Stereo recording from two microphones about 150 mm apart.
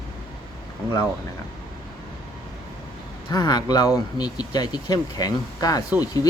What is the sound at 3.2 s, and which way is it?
A man's voice, 25° left (ahead or behind).